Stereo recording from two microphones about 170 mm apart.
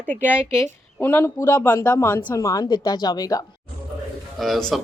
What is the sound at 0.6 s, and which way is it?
A woman's voice, 10° left (ahead or behind).